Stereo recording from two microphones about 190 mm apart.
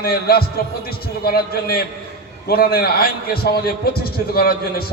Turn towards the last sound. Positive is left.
turn(degrees=55)  # may be behind; listen again after turning